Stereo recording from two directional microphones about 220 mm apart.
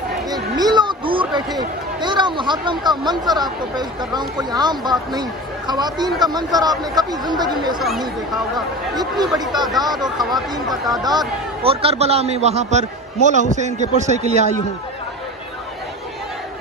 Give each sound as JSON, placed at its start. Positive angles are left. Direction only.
{"t": 0.3, "sound": "a sound", "side_deg": -20}
{"t": 2.0, "sound": "a man's voice", "side_deg": -20}
{"t": 8.9, "sound": "a man's voice", "side_deg": -20}
{"t": 10.0, "sound": "speech", "side_deg": 0}
{"t": 11.0, "sound": "a man's voice", "side_deg": -20}